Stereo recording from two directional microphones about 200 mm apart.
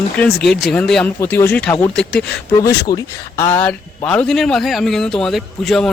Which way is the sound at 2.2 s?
60° left (ahead or behind).